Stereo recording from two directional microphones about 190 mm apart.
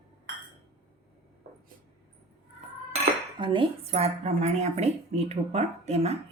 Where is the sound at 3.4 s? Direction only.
25° right (ahead or behind).